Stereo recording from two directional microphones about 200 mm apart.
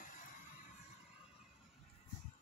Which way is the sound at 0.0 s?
40° left (ahead or behind).